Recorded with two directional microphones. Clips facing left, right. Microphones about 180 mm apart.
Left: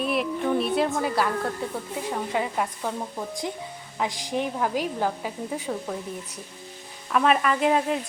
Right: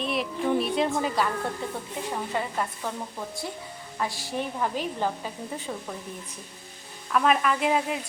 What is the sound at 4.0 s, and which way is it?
A woman's voice, 15° left (ahead or behind).